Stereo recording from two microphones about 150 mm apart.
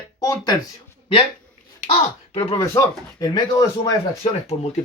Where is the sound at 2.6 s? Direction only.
20° left (ahead or behind).